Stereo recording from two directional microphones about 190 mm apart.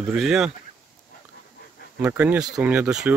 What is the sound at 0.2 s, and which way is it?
Speech, centre (ahead or behind).